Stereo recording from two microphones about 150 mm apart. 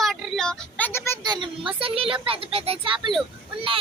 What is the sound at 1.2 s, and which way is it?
A child's voice, 30° right (ahead or behind).